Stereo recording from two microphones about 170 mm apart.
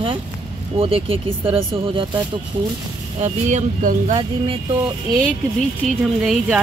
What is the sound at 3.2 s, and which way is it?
Speech, 45° right (ahead or behind).